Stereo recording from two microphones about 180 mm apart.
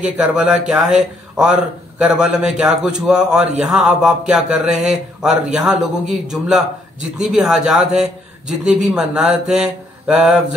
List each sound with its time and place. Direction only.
0.0 s speech: 5° right (ahead or behind)